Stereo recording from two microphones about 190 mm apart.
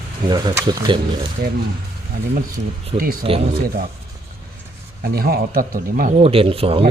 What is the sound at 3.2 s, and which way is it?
Speech, 30° right (ahead or behind).